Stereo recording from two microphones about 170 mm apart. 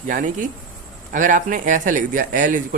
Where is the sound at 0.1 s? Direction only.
50° right (ahead or behind).